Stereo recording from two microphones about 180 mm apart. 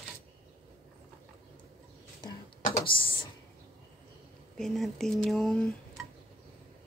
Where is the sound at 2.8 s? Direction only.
30° left (ahead or behind).